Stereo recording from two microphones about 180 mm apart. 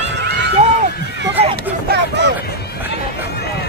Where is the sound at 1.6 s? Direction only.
70° right (ahead or behind).